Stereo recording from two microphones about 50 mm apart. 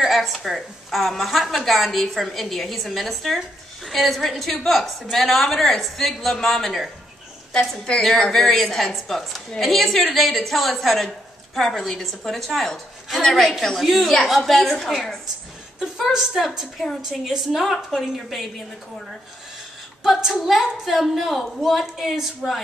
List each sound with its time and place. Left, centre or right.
0.0 s a woman's voice: centre
7.8 s a woman's voice: centre
15.8 s a woman's voice: centre
20.0 s a woman's voice: centre